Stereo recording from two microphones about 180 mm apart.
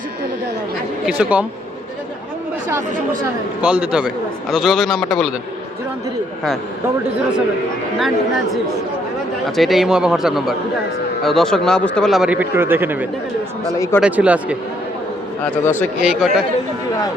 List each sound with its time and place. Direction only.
1.0 s speech: 5° right (ahead or behind)
3.6 s speech: 5° right (ahead or behind)
7.9 s speech: centre (ahead or behind)
9.6 s speech: centre (ahead or behind)
13.7 s speech: 15° left (ahead or behind)
14.0 s speech: 5° right (ahead or behind)
15.4 s speech: 10° left (ahead or behind)
16.0 s speech: 5° right (ahead or behind)